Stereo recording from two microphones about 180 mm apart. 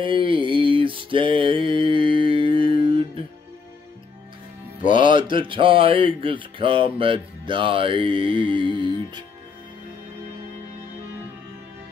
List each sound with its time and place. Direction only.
0.0 s mantra: 30° right (ahead or behind)
5.0 s speech: 25° right (ahead or behind)